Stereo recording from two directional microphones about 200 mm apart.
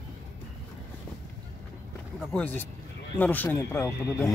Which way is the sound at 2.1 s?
5° left (ahead or behind).